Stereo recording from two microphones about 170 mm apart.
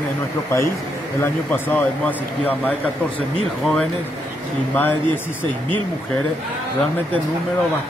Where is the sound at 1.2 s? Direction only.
10° left (ahead or behind).